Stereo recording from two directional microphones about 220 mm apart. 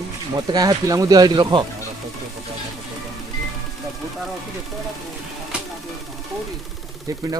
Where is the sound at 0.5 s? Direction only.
20° right (ahead or behind).